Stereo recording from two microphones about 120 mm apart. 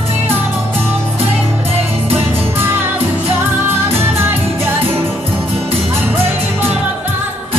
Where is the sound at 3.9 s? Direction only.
20° right (ahead or behind).